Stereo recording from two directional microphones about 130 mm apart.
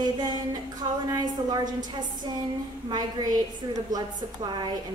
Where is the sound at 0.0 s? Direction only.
30° right (ahead or behind).